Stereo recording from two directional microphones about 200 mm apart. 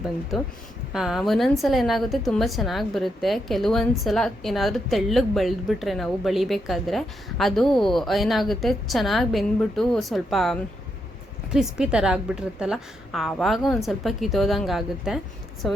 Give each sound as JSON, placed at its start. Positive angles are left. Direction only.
{"t": 0.3, "sound": "a woman's voice", "side_deg": 0}